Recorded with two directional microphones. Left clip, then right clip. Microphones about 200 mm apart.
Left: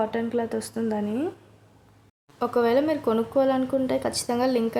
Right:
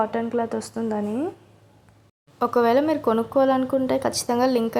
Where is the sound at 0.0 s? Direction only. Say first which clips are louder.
Right 2 dB; centre (ahead or behind).